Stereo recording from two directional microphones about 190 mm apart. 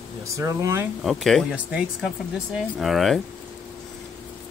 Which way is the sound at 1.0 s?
Centre (ahead or behind).